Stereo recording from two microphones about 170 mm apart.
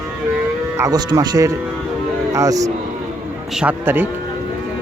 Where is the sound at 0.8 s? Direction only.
20° right (ahead or behind).